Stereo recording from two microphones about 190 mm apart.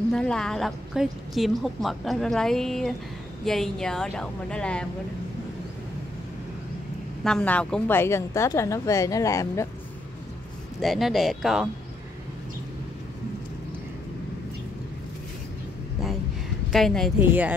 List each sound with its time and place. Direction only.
0.1 s a woman's voice: 5° left (ahead or behind)
7.2 s a woman's voice: 5° left (ahead or behind)
10.8 s a woman's voice: centre (ahead or behind)
16.7 s a woman's voice: centre (ahead or behind)
17.2 s speech: 10° right (ahead or behind)